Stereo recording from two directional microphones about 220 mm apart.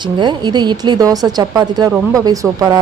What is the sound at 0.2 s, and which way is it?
A woman's voice, 20° right (ahead or behind).